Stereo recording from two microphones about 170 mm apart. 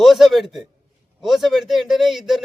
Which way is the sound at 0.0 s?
Centre (ahead or behind).